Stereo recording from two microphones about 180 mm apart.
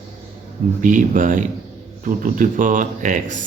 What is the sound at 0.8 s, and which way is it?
Speech, 45° right (ahead or behind).